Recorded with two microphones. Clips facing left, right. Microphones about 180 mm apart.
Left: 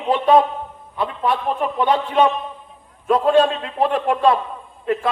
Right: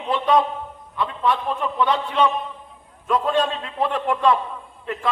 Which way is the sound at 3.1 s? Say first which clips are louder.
Left 6 dB; 40° left (ahead or behind).